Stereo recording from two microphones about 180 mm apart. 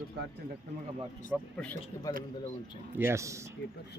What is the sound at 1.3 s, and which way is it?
Speech, 10° right (ahead or behind).